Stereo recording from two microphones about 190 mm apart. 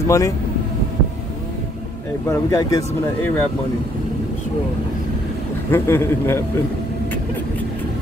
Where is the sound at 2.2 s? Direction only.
20° left (ahead or behind).